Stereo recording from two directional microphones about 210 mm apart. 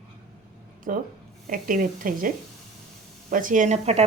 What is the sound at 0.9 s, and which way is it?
A woman's voice, 40° right (ahead or behind).